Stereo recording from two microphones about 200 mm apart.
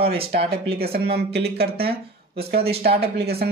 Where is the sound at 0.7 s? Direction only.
50° right (ahead or behind).